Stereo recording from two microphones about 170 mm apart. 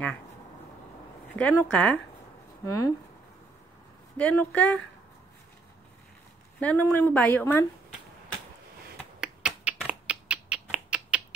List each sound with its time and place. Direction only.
1.6 s a woman's voice: 10° left (ahead or behind)
4.2 s a woman's voice: 10° left (ahead or behind)
6.6 s a woman's voice: 10° left (ahead or behind)
9.2 s finger snapping: 5° right (ahead or behind)